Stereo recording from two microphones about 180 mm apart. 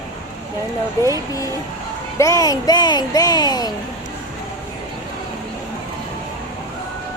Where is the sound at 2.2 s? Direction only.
20° left (ahead or behind).